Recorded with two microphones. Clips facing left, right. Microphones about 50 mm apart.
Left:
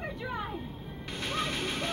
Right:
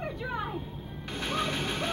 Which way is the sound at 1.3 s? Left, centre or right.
Centre.